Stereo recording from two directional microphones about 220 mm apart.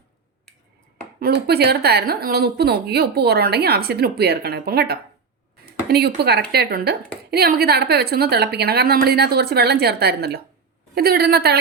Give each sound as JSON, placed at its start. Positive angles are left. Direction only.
{"t": 1.2, "sound": "speech", "side_deg": -45}